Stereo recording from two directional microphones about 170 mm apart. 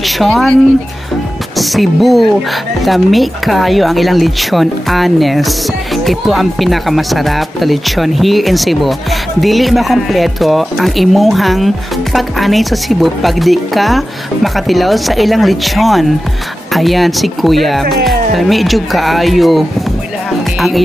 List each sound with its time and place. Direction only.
0.0 s speech: centre (ahead or behind)
1.6 s speech: centre (ahead or behind)